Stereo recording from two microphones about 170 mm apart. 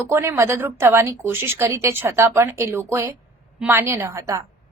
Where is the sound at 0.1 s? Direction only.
15° right (ahead or behind).